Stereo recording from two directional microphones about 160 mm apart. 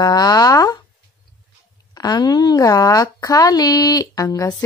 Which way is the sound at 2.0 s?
25° left (ahead or behind).